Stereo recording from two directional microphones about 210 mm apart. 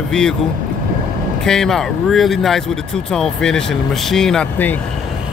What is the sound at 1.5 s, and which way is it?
Speech, centre (ahead or behind).